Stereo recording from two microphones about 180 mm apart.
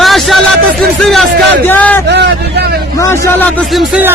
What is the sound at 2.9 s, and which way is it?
Speech, 15° left (ahead or behind).